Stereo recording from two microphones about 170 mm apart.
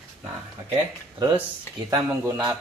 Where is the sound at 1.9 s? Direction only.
20° right (ahead or behind).